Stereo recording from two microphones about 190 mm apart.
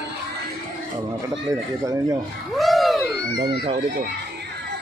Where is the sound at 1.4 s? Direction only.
15° right (ahead or behind).